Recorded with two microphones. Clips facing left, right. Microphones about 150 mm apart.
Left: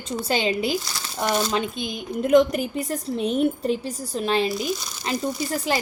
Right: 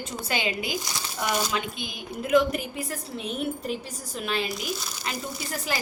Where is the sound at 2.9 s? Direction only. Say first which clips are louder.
Left 9 dB; 35° left (ahead or behind).